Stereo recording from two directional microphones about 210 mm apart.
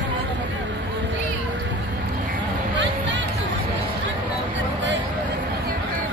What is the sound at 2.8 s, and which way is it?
Music, 60° right (ahead or behind).